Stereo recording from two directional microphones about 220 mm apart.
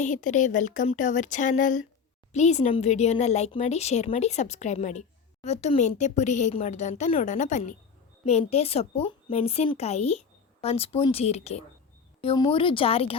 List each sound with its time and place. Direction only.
0.0 s a woman's voice: 35° left (ahead or behind)